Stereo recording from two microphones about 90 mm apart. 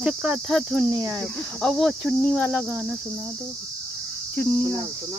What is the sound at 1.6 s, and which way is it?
Speech, centre (ahead or behind).